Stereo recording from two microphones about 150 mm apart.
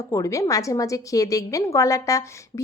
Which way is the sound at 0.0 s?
20° left (ahead or behind).